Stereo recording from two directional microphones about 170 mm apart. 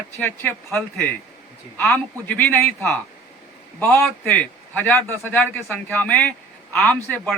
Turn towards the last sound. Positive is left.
turn(degrees=5)  # may be behind; listen again after turning